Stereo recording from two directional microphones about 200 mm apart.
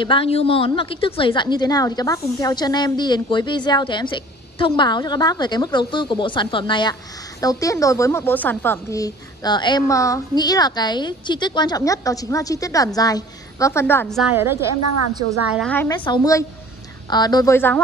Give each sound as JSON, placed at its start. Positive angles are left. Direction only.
{"t": 0.0, "sound": "a woman's voice", "side_deg": 25}
{"t": 14.1, "sound": "a woman's voice", "side_deg": -5}
{"t": 15.5, "sound": "a woman's voice", "side_deg": 5}
{"t": 15.9, "sound": "a woman's voice", "side_deg": 20}